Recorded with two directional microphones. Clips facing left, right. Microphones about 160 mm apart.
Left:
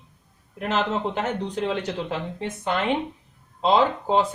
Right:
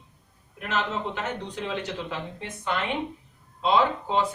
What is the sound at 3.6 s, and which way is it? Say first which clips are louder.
Speech: left 3 dB; 40° left (ahead or behind).